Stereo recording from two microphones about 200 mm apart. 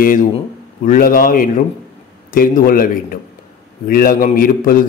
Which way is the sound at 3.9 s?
45° left (ahead or behind).